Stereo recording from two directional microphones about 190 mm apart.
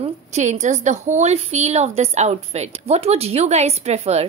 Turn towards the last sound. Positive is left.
turn(degrees=-35)  # may be behind; listen again after turning